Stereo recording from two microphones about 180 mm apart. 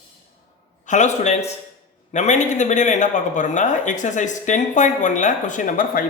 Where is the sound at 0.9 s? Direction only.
40° left (ahead or behind).